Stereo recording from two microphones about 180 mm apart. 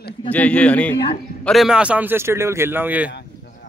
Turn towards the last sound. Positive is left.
turn(degrees=-10)  # may be behind; listen again after turning